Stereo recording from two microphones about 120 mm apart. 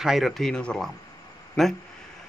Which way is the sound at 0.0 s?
Centre (ahead or behind).